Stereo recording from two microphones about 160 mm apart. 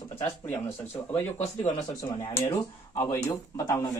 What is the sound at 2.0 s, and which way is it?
Speech, 25° left (ahead or behind).